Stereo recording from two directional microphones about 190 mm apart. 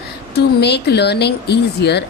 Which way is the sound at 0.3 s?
60° left (ahead or behind).